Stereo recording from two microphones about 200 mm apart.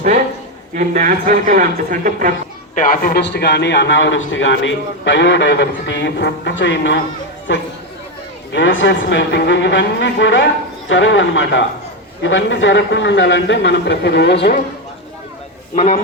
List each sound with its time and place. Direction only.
0.7 s speech: 40° right (ahead or behind)
2.7 s a man's voice: 40° left (ahead or behind); by 14.6 s 60° left (ahead or behind)
15.7 s a man's voice: 35° left (ahead or behind)